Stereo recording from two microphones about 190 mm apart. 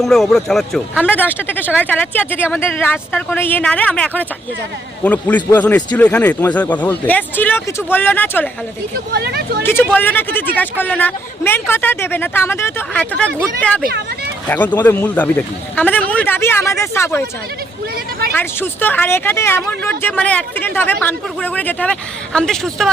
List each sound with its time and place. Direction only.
0.0 s speech: centre (ahead or behind)
9.1 s speech: 55° right (ahead or behind)
9.9 s speech: 10° left (ahead or behind)
18.3 s speech: 10° left (ahead or behind)